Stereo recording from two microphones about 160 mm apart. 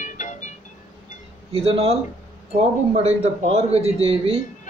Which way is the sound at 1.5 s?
35° right (ahead or behind).